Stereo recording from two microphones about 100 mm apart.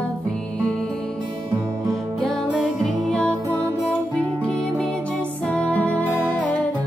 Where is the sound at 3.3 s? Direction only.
30° right (ahead or behind).